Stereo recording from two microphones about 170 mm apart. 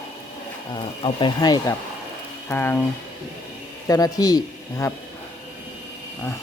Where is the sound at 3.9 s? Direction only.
20° left (ahead or behind).